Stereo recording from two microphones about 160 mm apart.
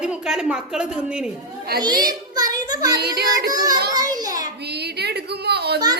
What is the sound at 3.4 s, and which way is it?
Speech, 20° right (ahead or behind).